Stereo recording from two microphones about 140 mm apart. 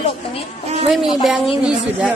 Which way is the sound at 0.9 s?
Centre (ahead or behind).